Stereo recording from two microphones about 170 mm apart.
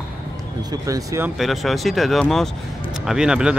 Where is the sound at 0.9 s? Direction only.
20° right (ahead or behind).